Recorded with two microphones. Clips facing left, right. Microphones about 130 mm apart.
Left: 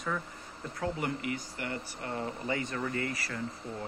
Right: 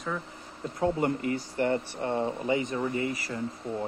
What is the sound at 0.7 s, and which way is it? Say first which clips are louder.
Speech: right 7 dB; 25° right (ahead or behind).